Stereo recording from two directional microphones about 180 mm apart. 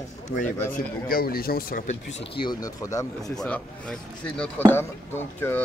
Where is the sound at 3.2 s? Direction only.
5° left (ahead or behind).